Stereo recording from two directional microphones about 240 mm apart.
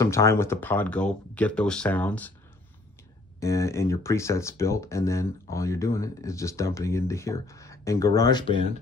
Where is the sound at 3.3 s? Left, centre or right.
Centre.